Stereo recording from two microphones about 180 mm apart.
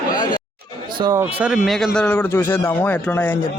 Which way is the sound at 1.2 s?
5° right (ahead or behind).